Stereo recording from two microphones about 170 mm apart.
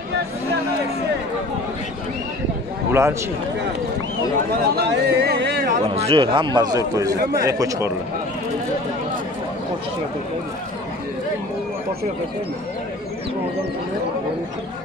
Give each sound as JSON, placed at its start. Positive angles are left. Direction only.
{"t": 2.9, "sound": "a man's voice", "side_deg": -15}
{"t": 4.6, "sound": "speech", "side_deg": -70}
{"t": 5.9, "sound": "a man's voice", "side_deg": -35}